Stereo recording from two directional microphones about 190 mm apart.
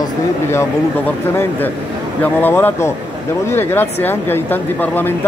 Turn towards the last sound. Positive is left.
turn(degrees=10)  # may be behind; listen again after turning